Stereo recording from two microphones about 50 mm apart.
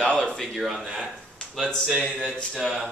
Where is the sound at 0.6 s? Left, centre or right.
Centre.